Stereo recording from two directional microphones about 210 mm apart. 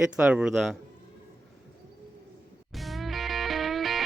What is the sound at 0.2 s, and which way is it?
Speech, 5° right (ahead or behind).